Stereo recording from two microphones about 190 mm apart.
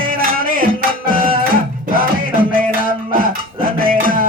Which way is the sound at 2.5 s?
45° right (ahead or behind).